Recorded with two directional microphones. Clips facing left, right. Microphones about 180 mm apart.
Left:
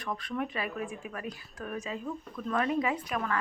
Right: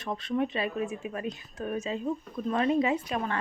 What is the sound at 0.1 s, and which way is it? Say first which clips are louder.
A woman's voice: right 5 dB; 25° right (ahead or behind).